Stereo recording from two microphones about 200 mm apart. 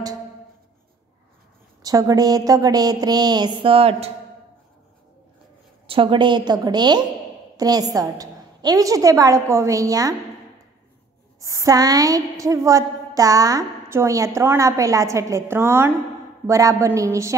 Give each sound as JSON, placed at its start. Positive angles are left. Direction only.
{"t": 1.8, "sound": "speech", "side_deg": -20}
{"t": 5.9, "sound": "a woman's voice", "side_deg": -25}
{"t": 11.3, "sound": "a woman's voice", "side_deg": -15}